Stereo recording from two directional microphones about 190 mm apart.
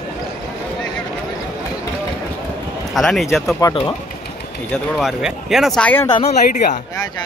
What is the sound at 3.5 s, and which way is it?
Speech, 20° left (ahead or behind).